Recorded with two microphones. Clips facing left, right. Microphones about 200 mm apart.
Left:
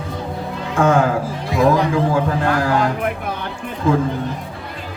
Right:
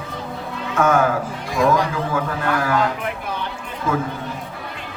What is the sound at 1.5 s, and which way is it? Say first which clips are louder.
Music: left 3 dB; 30° left (ahead or behind).